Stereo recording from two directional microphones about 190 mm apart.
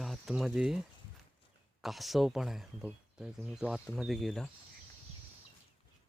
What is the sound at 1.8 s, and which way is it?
Speech, centre (ahead or behind).